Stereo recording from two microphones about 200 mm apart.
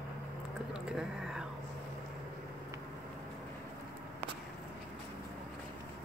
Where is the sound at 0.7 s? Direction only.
5° right (ahead or behind).